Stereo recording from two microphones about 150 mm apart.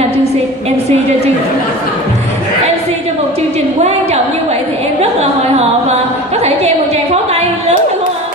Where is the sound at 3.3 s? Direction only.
45° right (ahead or behind).